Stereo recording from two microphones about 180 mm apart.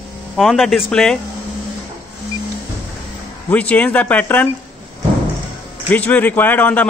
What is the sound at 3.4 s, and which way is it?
A man's voice, 10° left (ahead or behind).